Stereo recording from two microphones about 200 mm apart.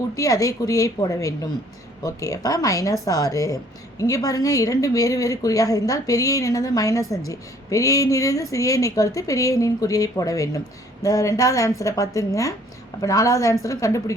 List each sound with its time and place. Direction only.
0.2 s speech: 15° left (ahead or behind)